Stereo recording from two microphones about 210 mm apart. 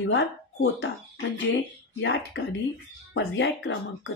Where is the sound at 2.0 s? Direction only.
60° left (ahead or behind).